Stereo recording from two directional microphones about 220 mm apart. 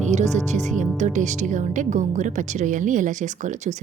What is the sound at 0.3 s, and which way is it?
Speech, 30° right (ahead or behind).